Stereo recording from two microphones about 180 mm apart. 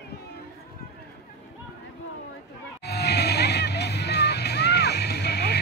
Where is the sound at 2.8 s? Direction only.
65° left (ahead or behind).